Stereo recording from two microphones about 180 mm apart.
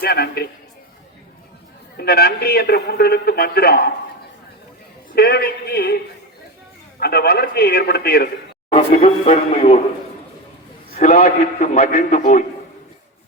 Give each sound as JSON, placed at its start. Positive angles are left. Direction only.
{"t": 0.0, "sound": "a man's voice", "side_deg": 60}
{"t": 2.0, "sound": "a man's voice", "side_deg": 60}
{"t": 5.1, "sound": "a man's voice", "side_deg": 60}
{"t": 7.0, "sound": "a man's voice", "side_deg": 60}
{"t": 8.7, "sound": "speech", "side_deg": 35}
{"t": 10.9, "sound": "a man's voice", "side_deg": 50}